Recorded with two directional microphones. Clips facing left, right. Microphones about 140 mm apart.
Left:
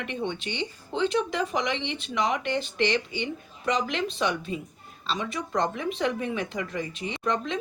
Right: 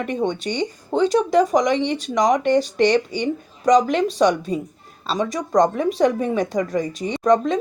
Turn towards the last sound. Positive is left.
turn(degrees=-40)  # may be behind; listen again after turning